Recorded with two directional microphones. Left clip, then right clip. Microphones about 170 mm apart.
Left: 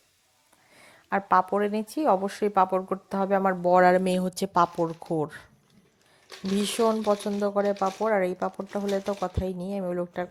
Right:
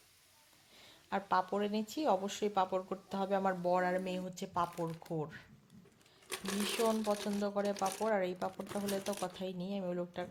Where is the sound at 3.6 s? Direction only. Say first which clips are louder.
Left 14 dB; 50° left (ahead or behind).